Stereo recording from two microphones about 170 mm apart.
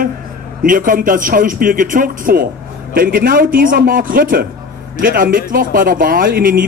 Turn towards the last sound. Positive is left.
turn(degrees=-55)  # may be behind; listen again after turning